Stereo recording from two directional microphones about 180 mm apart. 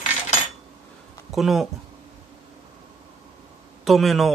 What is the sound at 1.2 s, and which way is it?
Speech, centre (ahead or behind).